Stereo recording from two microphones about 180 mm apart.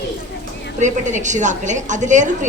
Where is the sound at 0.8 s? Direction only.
45° right (ahead or behind).